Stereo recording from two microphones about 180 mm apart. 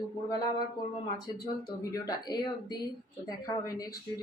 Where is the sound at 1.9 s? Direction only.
20° left (ahead or behind).